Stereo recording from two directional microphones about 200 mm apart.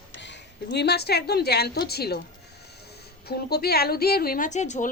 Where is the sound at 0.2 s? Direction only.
60° left (ahead or behind).